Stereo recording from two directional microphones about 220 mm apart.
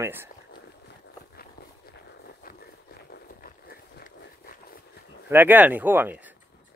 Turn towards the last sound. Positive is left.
turn(degrees=-10)  # may be behind; listen again after turning